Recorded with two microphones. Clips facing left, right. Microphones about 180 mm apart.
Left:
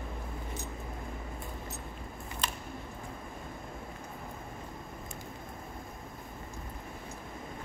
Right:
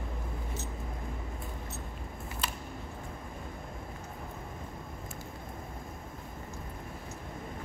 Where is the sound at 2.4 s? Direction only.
5° right (ahead or behind).